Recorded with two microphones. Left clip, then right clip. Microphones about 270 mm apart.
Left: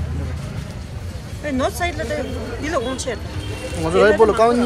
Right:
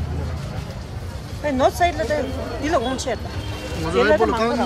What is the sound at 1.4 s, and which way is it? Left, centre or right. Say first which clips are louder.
Speech: right 4 dB; right.